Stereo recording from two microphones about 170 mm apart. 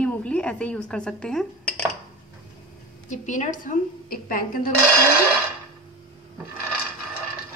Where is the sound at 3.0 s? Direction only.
45° left (ahead or behind).